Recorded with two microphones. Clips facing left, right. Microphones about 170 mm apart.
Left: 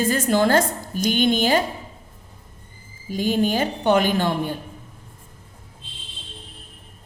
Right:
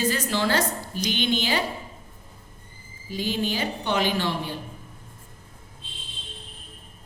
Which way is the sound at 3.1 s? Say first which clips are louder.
Left 6 dB; 45° left (ahead or behind).